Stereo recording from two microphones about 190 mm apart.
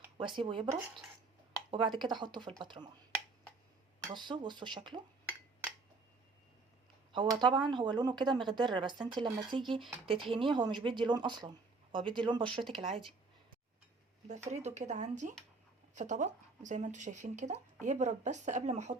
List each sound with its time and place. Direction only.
0.2 s speech: 25° right (ahead or behind)
1.7 s speech: 25° right (ahead or behind)
4.1 s speech: 25° right (ahead or behind)
7.1 s speech: 25° right (ahead or behind)
14.3 s speech: 35° right (ahead or behind)